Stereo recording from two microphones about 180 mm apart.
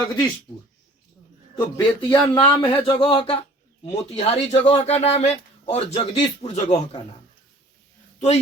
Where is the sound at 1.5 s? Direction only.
20° left (ahead or behind).